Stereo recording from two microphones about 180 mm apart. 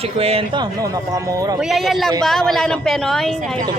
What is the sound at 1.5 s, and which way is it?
Speech, centre (ahead or behind).